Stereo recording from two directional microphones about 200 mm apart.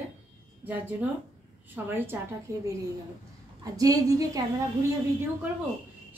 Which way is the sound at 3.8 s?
15° right (ahead or behind).